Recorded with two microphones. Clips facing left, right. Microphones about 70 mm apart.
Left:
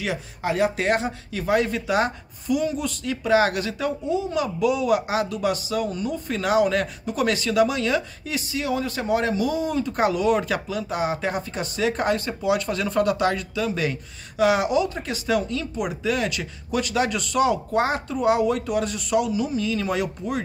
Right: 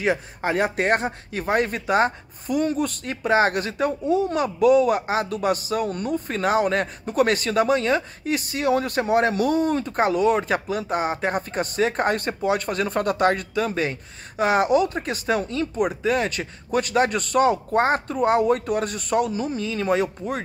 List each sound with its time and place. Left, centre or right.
0.0 s speech: right
9.9 s speech: right